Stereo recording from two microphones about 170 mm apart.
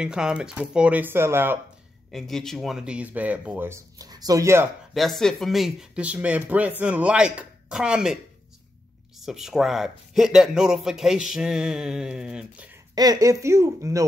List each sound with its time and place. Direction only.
0.0 s speech: 5° right (ahead or behind)
2.0 s speech: centre (ahead or behind); by 4.6 s 15° right (ahead or behind)
4.9 s speech: centre (ahead or behind)
9.2 s speech: centre (ahead or behind)
12.9 s speech: 25° right (ahead or behind)